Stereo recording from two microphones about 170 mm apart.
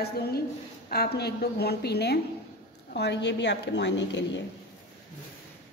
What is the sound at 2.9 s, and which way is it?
A woman's voice, 85° left.